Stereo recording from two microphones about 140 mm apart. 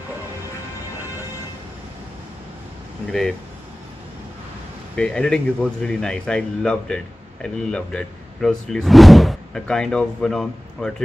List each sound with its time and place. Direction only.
3.1 s speech: 5° left (ahead or behind)
4.9 s speech: 5° left (ahead or behind)